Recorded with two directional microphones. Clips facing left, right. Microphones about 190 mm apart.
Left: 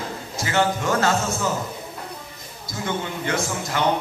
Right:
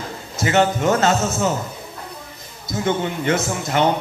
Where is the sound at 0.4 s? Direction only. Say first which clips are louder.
Right 5 dB; 20° right (ahead or behind).